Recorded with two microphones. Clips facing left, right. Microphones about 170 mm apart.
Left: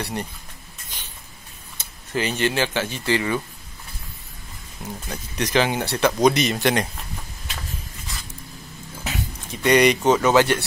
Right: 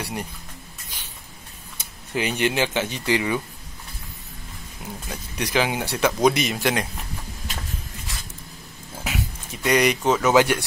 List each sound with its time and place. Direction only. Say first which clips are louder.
0.0 s speech: left 2 dB; 10° right (ahead or behind)
1.8 s speech: left 1 dB; 15° right (ahead or behind)
5.0 s speech: left 2 dB; 5° right (ahead or behind)
9.0 s a sound: right 1 dB; 5° right (ahead or behind)
10.3 s speech: even; 10° right (ahead or behind)